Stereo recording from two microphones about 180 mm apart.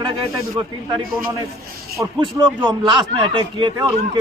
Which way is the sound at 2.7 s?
25° right (ahead or behind).